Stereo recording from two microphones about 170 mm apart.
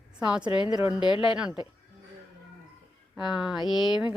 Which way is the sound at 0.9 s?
25° left (ahead or behind).